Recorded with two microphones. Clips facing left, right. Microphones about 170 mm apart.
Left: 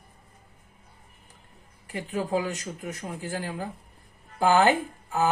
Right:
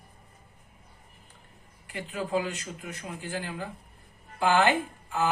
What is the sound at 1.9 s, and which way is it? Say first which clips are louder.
Speech: left 2 dB; 40° left (ahead or behind).